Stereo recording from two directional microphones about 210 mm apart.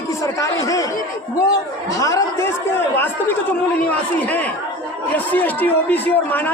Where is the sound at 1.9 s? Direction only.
15° left (ahead or behind).